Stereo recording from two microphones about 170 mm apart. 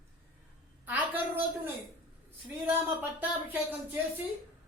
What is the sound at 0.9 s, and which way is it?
Speech, 10° right (ahead or behind).